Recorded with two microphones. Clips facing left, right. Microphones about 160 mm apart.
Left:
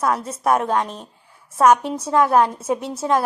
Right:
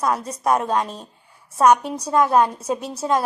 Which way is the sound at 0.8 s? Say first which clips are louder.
Left 1 dB; 20° left (ahead or behind).